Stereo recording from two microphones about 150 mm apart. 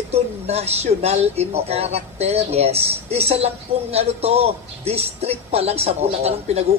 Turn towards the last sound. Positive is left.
turn(degrees=-45)  # may be behind; listen again after turning